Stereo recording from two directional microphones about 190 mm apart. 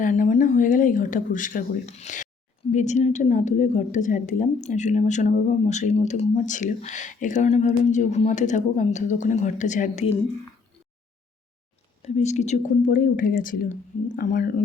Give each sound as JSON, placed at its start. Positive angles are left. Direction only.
{"t": 0.0, "sound": "a woman's voice", "side_deg": 45}
{"t": 12.0, "sound": "speech", "side_deg": 35}